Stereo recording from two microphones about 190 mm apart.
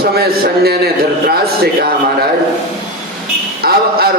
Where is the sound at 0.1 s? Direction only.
55° right (ahead or behind).